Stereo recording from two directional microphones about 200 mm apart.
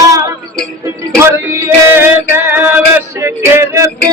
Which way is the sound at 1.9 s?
10° right (ahead or behind).